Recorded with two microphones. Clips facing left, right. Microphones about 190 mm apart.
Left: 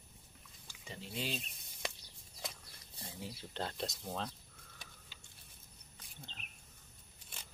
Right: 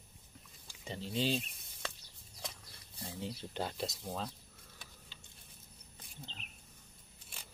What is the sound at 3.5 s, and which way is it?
Speech, 5° right (ahead or behind).